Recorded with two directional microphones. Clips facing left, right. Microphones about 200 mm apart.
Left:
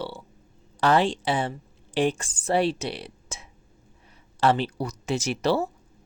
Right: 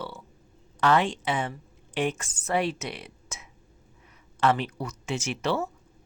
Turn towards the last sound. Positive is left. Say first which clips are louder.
# left 4 dB
turn(degrees=35)  # may be behind; listen again after turning